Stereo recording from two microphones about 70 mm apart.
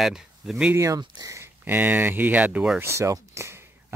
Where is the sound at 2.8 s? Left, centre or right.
Right.